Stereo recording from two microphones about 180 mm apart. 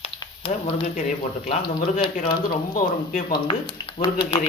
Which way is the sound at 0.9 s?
45° left (ahead or behind).